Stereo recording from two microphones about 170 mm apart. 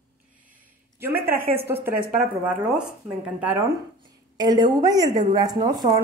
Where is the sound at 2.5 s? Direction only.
10° right (ahead or behind).